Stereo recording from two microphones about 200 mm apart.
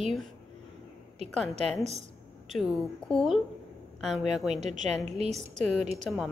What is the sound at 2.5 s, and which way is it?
Speech, centre (ahead or behind).